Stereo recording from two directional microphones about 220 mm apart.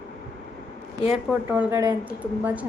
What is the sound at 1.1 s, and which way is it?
Speech, 5° right (ahead or behind).